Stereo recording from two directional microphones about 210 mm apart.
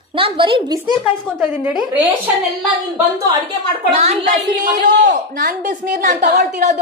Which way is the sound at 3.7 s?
30° right (ahead or behind).